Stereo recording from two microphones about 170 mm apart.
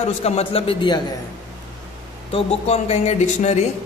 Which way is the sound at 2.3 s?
40° left (ahead or behind).